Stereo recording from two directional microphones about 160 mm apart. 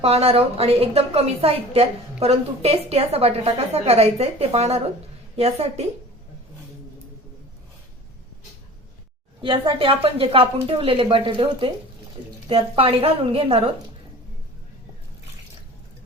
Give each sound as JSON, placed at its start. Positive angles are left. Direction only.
{"t": 0.0, "sound": "a woman's voice", "side_deg": -40}
{"t": 9.4, "sound": "a woman's voice", "side_deg": -35}